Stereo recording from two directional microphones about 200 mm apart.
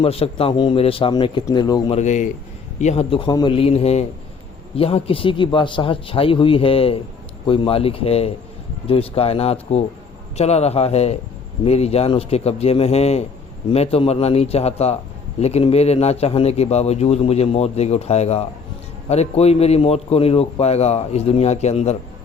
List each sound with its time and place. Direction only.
0.0 s a man's voice: 30° left (ahead or behind)
2.0 s a man's voice: 35° left (ahead or behind)